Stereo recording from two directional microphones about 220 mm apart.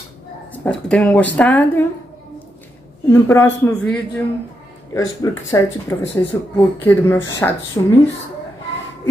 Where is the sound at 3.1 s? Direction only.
10° left (ahead or behind).